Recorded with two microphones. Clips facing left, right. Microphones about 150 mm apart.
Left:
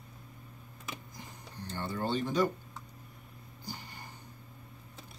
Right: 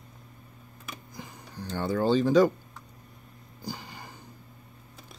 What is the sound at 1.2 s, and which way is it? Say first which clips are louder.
Speech: right 5 dB; 90° right.